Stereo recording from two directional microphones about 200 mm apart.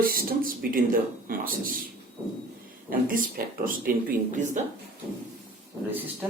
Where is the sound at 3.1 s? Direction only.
45° right (ahead or behind).